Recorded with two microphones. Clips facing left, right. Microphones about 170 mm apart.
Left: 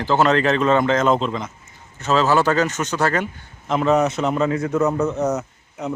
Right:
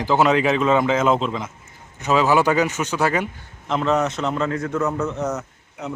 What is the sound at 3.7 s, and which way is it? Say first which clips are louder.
A man's voice: left 3 dB; 10° left (ahead or behind).